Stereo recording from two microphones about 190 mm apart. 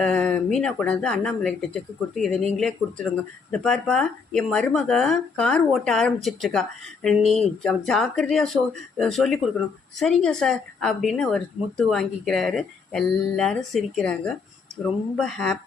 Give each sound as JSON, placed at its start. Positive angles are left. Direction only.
{"t": 0.0, "sound": "speech", "side_deg": 5}
{"t": 7.2, "sound": "speech", "side_deg": 35}
{"t": 7.6, "sound": "speech", "side_deg": 5}